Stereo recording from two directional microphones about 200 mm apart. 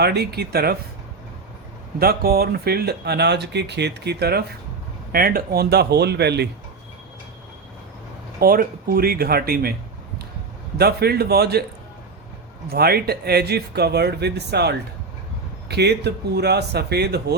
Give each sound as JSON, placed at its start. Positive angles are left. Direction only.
{"t": 0.0, "sound": "speech", "side_deg": -55}
{"t": 2.0, "sound": "speech", "side_deg": -50}
{"t": 8.4, "sound": "speech", "side_deg": -45}
{"t": 10.8, "sound": "speech", "side_deg": -55}
{"t": 12.6, "sound": "speech", "side_deg": -50}